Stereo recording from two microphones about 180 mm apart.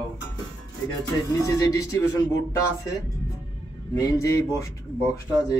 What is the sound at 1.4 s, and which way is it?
Speech, 15° left (ahead or behind).